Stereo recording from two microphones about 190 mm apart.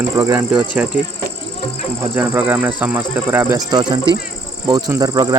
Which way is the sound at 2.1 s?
10° right (ahead or behind).